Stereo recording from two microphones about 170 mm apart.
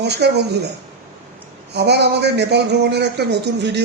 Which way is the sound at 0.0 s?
80° right.